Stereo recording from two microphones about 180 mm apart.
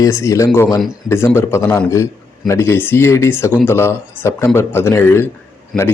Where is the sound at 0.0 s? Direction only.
15° left (ahead or behind).